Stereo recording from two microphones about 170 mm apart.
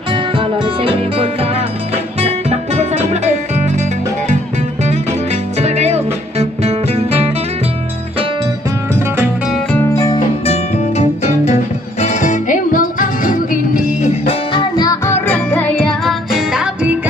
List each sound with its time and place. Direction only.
0.1 s music: 30° right (ahead or behind)
4.8 s music: 40° right (ahead or behind)
9.9 s music: 25° left (ahead or behind)
10.4 s music: 40° left (ahead or behind)
14.2 s music: 30° left (ahead or behind); by 16.9 s centre (ahead or behind)